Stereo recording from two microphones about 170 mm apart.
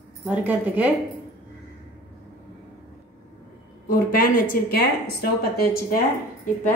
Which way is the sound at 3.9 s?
55° left (ahead or behind).